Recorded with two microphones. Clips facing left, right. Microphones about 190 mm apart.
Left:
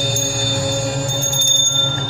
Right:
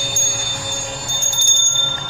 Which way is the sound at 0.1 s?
40° left (ahead or behind).